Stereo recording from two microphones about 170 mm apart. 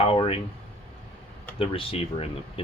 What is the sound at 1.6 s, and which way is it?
Speech, 35° left (ahead or behind).